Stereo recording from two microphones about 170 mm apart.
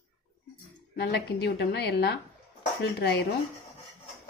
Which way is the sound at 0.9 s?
70° left (ahead or behind).